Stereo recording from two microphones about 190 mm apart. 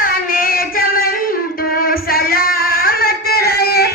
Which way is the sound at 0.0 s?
50° left (ahead or behind).